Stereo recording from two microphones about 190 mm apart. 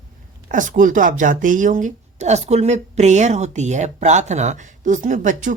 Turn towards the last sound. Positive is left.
turn(degrees=-40)  # may be behind; listen again after turning